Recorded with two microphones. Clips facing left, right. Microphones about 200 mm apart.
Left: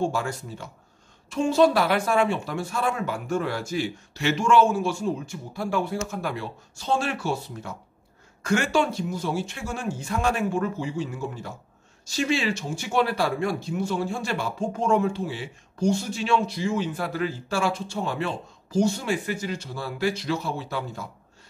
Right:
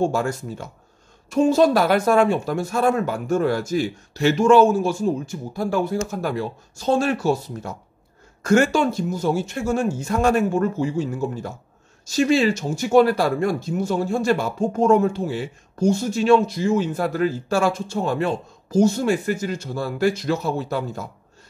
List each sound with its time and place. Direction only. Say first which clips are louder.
0.0 s speech: right 5 dB; 45° right (ahead or behind)